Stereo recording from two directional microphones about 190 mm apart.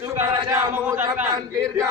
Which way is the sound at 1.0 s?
10° right (ahead or behind).